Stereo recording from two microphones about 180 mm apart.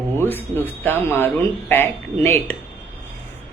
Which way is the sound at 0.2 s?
10° left (ahead or behind).